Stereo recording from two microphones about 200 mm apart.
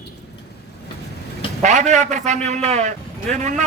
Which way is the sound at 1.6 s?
35° right (ahead or behind).